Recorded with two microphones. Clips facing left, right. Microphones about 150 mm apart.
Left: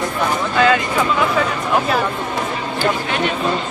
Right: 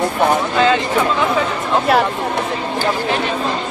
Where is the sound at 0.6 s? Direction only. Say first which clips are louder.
Left 2 dB; 25° right (ahead or behind).